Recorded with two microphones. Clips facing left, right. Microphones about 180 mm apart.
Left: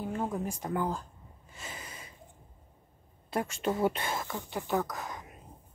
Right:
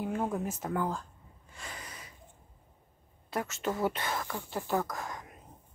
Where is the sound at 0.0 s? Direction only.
5° right (ahead or behind).